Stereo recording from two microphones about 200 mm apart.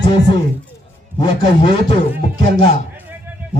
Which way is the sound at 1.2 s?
25° left (ahead or behind).